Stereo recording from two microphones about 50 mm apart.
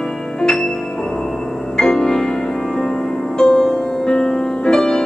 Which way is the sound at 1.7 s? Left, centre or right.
Centre.